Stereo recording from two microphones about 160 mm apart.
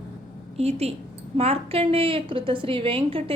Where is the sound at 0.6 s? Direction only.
40° right (ahead or behind).